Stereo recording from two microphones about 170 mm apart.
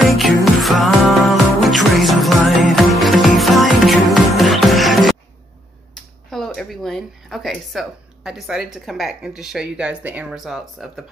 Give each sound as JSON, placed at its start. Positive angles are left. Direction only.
{"t": 0.0, "sound": "music", "side_deg": 0}
{"t": 6.3, "sound": "speech", "side_deg": 0}